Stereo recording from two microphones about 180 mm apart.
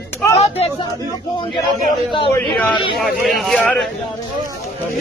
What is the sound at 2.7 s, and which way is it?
Speech, 25° left (ahead or behind).